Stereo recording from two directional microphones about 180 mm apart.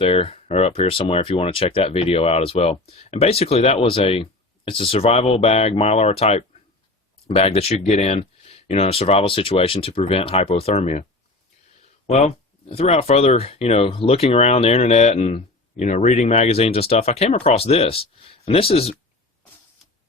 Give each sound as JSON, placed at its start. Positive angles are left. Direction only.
{"t": 0.0, "sound": "speech", "side_deg": 35}
{"t": 12.0, "sound": "speech", "side_deg": 35}